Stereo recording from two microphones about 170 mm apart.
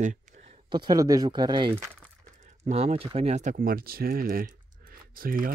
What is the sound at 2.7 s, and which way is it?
Speech, 40° right (ahead or behind).